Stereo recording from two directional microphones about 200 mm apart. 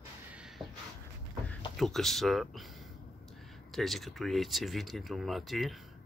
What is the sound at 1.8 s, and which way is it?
Speech, centre (ahead or behind).